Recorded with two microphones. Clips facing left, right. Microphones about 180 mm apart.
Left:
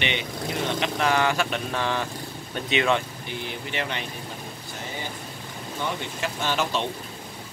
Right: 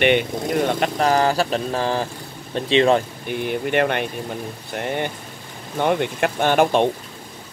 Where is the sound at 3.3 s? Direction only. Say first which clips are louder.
Right 11 dB; 55° right (ahead or behind).